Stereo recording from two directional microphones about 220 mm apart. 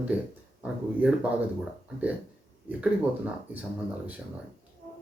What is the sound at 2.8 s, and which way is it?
Speech, 5° right (ahead or behind).